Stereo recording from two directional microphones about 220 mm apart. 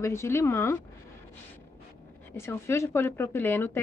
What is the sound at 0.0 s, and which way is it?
Speech, 10° left (ahead or behind).